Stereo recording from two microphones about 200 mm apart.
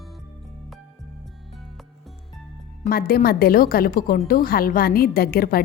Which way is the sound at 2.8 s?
50° left (ahead or behind).